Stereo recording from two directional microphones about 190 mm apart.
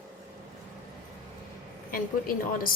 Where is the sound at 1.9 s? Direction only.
50° left (ahead or behind).